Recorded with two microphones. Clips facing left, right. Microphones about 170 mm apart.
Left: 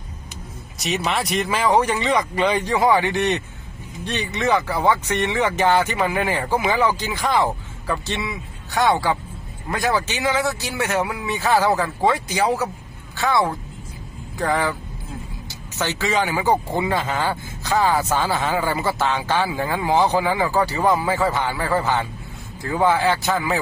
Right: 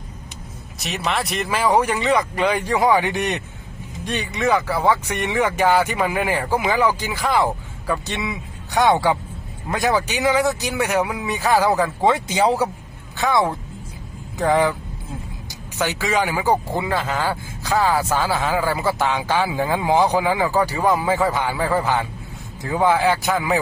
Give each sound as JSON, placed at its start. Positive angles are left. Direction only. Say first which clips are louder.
{"t": 0.7, "sound": "speech", "louder": "left 1 dB", "side_deg": 0}
{"t": 15.8, "sound": "speech", "louder": "right 1 dB", "side_deg": -10}